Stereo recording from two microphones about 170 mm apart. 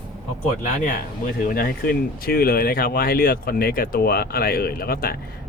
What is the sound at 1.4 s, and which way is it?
Speech, 60° left (ahead or behind).